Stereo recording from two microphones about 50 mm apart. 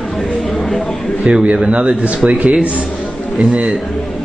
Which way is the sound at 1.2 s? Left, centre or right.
Right.